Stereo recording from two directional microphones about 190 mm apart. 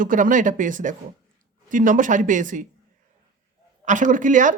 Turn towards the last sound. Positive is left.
turn(degrees=-40)  # may be behind; listen again after turning